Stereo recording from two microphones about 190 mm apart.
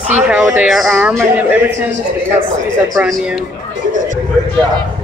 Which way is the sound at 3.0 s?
Centre (ahead or behind).